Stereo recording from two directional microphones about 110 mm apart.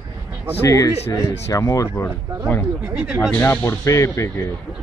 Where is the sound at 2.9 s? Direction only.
10° right (ahead or behind).